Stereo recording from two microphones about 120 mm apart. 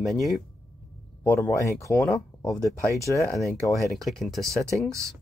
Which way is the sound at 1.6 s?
25° left (ahead or behind).